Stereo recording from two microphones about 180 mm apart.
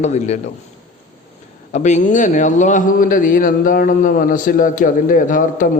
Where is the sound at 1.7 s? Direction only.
40° left (ahead or behind).